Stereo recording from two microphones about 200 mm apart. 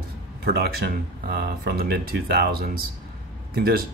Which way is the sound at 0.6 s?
50° right (ahead or behind).